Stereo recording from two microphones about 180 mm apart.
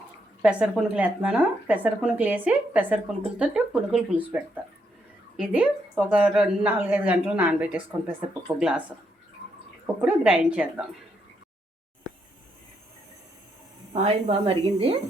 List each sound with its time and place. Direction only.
0.4 s speech: 5° right (ahead or behind)
9.8 s speech: 5° right (ahead or behind)
13.9 s a woman's voice: 35° right (ahead or behind)